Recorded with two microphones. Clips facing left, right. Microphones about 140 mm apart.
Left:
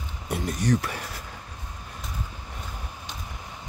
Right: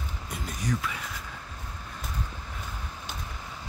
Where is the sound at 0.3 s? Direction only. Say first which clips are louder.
Left 7 dB; 70° left (ahead or behind).